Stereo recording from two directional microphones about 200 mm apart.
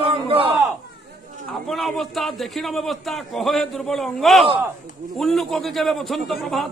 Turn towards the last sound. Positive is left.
turn(degrees=0)  # may be behind; listen again after turning